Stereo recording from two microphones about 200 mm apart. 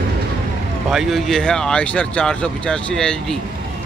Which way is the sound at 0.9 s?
Centre (ahead or behind).